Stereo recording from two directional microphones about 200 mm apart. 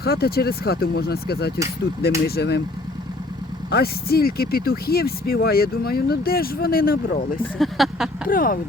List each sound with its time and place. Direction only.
0.0 s speech: 50° left (ahead or behind)
3.7 s speech: 50° left (ahead or behind)
7.6 s a sound: centre (ahead or behind)
8.3 s speech: 45° left (ahead or behind)